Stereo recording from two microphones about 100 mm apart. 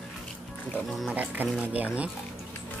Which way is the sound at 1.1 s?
15° right (ahead or behind).